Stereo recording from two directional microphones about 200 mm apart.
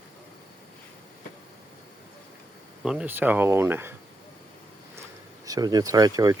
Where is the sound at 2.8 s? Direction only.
5° right (ahead or behind).